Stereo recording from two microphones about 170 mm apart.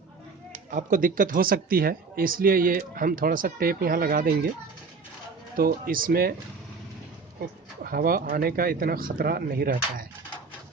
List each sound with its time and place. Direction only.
0.5 s speech: 50° right (ahead or behind)
5.5 s speech: 55° right (ahead or behind)
7.9 s speech: 60° right (ahead or behind)